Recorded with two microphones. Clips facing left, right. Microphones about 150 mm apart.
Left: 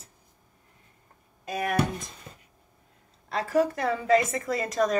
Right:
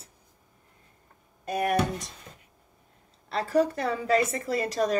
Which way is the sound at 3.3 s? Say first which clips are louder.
Even; 30° right (ahead or behind).